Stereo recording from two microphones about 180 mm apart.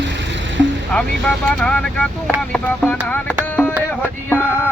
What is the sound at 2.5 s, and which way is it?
Music, 10° left (ahead or behind).